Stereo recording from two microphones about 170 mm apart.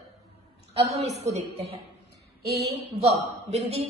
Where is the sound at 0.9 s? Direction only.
40° right (ahead or behind).